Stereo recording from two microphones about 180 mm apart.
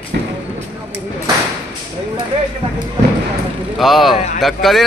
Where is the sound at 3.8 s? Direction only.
Centre (ahead or behind).